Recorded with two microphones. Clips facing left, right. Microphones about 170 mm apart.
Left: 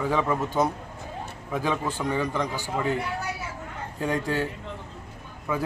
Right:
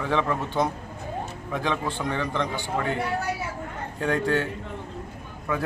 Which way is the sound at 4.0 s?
10° left (ahead or behind).